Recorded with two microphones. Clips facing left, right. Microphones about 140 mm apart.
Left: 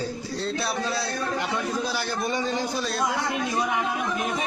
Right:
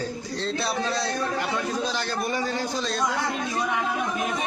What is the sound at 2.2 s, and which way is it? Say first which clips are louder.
Speech: left 1 dB; 20° left (ahead or behind).